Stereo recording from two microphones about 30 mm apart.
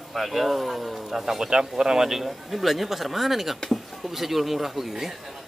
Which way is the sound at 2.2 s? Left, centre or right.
Centre.